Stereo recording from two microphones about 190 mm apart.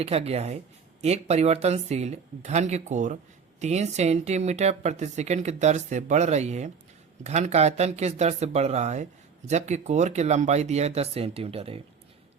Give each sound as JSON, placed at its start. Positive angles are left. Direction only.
{"t": 0.0, "sound": "speech", "side_deg": -30}